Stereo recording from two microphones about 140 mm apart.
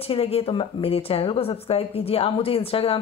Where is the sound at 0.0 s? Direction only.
45° left (ahead or behind).